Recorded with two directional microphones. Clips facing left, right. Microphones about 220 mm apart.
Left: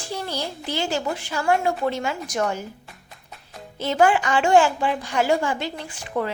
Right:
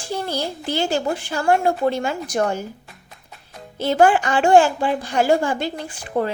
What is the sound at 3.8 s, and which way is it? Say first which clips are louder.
A woman's voice: right 3 dB; 40° right (ahead or behind).